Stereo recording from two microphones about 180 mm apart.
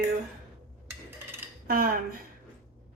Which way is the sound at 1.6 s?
50° right (ahead or behind).